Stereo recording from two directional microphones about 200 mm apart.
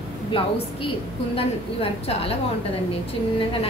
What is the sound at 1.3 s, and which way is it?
A woman's voice, 30° left (ahead or behind).